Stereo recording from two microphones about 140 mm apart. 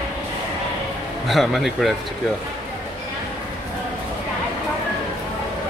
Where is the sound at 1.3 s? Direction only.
Centre (ahead or behind).